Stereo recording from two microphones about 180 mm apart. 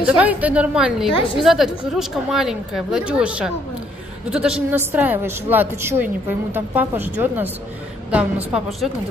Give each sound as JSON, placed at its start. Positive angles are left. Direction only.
{"t": 0.0, "sound": "speech", "side_deg": -10}